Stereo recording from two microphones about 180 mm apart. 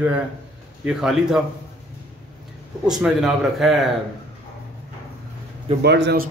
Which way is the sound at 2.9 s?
5° right (ahead or behind).